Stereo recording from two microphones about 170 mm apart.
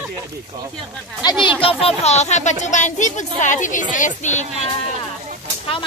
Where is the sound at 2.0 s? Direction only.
40° left (ahead or behind).